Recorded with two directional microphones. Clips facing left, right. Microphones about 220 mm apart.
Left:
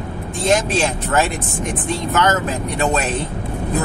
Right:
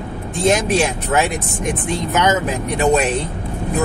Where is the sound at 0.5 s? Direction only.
15° right (ahead or behind).